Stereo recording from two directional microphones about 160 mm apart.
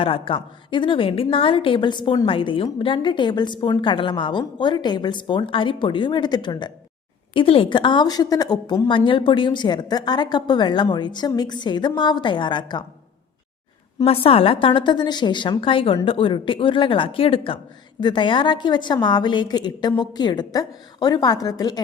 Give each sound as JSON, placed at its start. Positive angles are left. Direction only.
{"t": 0.0, "sound": "a woman's voice", "side_deg": 35}
{"t": 14.0, "sound": "a woman's voice", "side_deg": 35}